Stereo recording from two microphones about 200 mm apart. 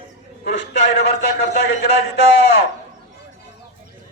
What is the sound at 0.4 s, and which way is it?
A man's voice, 60° left (ahead or behind).